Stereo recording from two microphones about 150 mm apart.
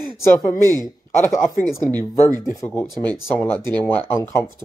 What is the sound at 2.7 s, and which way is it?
Speech, 10° left (ahead or behind).